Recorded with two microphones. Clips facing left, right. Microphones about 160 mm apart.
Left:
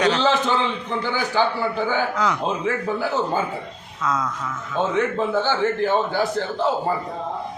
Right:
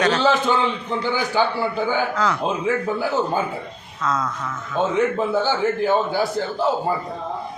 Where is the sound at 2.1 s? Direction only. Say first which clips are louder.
Right 1 dB; 15° left (ahead or behind).